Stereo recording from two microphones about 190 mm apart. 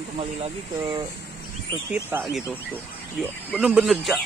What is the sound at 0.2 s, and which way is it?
Speech, 30° right (ahead or behind).